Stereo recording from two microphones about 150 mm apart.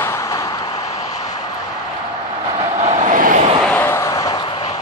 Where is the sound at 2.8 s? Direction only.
50° right (ahead or behind).